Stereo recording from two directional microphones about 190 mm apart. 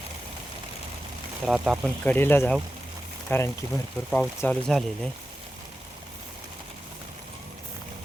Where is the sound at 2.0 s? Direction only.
10° left (ahead or behind).